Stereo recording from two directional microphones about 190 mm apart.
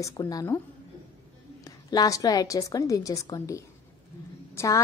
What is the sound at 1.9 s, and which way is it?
A woman's voice, 20° left (ahead or behind).